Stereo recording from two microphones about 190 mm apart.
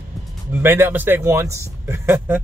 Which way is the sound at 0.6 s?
10° right (ahead or behind).